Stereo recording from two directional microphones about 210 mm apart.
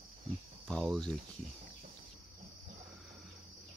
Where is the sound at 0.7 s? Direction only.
5° left (ahead or behind).